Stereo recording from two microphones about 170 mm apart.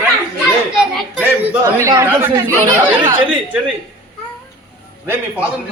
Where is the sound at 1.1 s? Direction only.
15° right (ahead or behind).